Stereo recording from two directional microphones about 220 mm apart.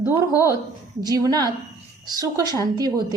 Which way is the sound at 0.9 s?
15° right (ahead or behind).